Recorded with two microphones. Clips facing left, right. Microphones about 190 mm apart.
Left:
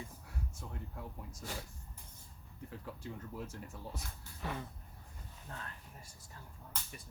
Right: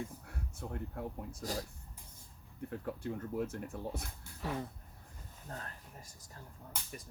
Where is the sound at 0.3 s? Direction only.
60° right (ahead or behind).